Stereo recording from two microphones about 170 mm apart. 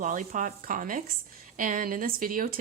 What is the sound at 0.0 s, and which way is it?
Speech, 50° right (ahead or behind).